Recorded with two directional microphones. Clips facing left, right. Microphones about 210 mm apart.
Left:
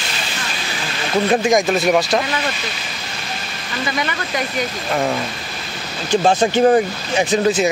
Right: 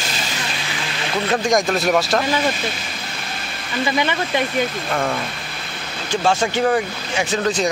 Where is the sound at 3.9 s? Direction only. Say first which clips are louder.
Right 3 dB; 25° right (ahead or behind).